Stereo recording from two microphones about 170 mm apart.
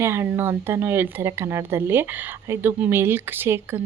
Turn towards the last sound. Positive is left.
turn(degrees=-15)  # may be behind; listen again after turning